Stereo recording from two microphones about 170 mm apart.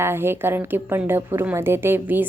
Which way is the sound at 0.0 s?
15° right (ahead or behind).